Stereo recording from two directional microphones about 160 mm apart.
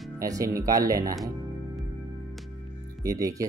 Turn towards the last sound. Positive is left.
turn(degrees=-20)  # may be behind; listen again after turning